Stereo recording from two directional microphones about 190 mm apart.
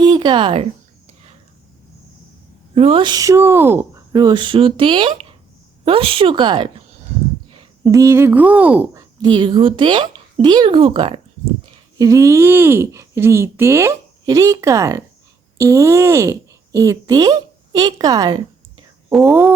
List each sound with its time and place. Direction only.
0.0 s speech: 25° right (ahead or behind)
2.7 s speech: 30° right (ahead or behind); by 4.0 s 10° right (ahead or behind)
4.1 s a woman's voice: 20° right (ahead or behind)
7.9 s a woman's voice: 15° right (ahead or behind)
11.9 s speech: 15° right (ahead or behind)
19.3 s speech: 10° right (ahead or behind)